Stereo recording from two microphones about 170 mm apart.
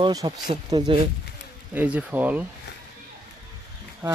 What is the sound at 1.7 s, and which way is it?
Speech, 10° right (ahead or behind).